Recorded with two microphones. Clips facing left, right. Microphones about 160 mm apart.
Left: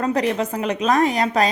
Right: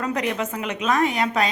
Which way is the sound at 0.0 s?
35° left (ahead or behind).